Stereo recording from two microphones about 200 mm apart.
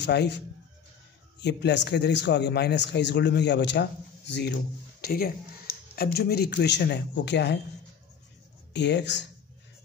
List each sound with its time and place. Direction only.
0.0 s a man's voice: 60° left (ahead or behind)
1.4 s a man's voice: 55° left (ahead or behind)
5.0 s a man's voice: 50° left (ahead or behind)
8.7 s a man's voice: 60° left (ahead or behind)